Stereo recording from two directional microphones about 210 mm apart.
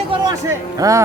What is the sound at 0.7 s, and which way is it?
Speech, 15° right (ahead or behind).